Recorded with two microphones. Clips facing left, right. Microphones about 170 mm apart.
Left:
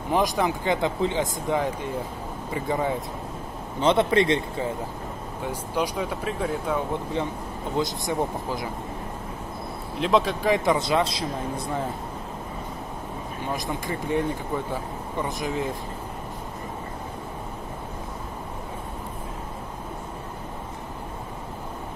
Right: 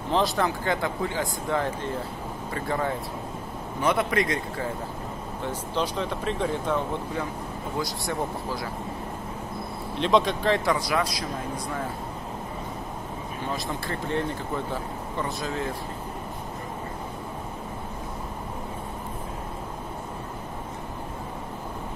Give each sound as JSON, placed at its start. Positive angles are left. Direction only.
{"t": 0.1, "sound": "speech", "side_deg": 15}
{"t": 3.8, "sound": "a man's voice", "side_deg": 25}
{"t": 5.4, "sound": "speech", "side_deg": 10}
{"t": 7.7, "sound": "a man's voice", "side_deg": 20}
{"t": 9.9, "sound": "speech", "side_deg": 5}
{"t": 10.5, "sound": "a man's voice", "side_deg": 20}
{"t": 13.5, "sound": "speech", "side_deg": 15}